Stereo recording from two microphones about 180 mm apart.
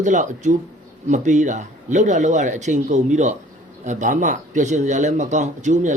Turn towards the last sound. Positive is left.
turn(degrees=-40)  # may be behind; listen again after turning